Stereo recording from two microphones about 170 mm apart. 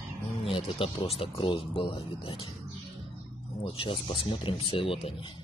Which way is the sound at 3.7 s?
30° left (ahead or behind).